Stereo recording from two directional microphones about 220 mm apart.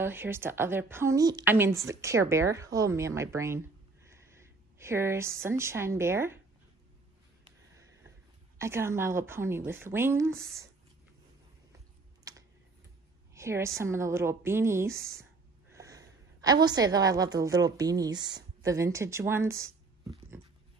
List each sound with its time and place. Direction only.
0.0 s a woman's voice: 10° right (ahead or behind)
8.5 s a woman's voice: 10° right (ahead or behind)
13.3 s a woman's voice: 10° right (ahead or behind)